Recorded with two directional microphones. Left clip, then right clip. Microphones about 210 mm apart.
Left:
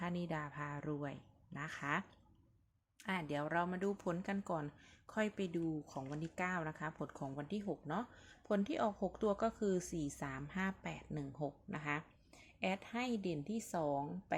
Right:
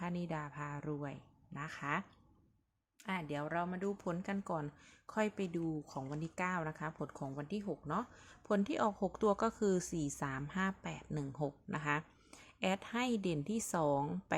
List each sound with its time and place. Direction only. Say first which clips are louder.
0.0 s speech: even; 5° right (ahead or behind); by 14.3 s 25° right (ahead or behind)